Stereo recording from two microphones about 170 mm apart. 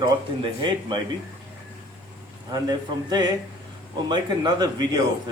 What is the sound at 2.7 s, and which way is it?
Speech, 25° right (ahead or behind).